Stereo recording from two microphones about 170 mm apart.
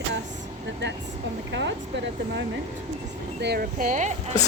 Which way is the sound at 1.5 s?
90° right.